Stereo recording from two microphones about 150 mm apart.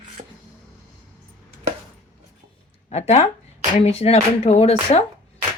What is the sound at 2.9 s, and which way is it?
Speech, 45° left (ahead or behind).